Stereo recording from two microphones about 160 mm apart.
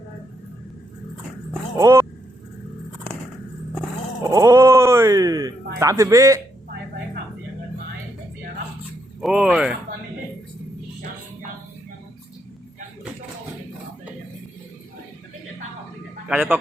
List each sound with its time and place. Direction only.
1.7 s speech: 20° right (ahead or behind)
4.2 s bleat: 20° right (ahead or behind)
5.8 s speech: 20° right (ahead or behind)
9.2 s speech: 5° right (ahead or behind)
16.3 s speech: 10° right (ahead or behind)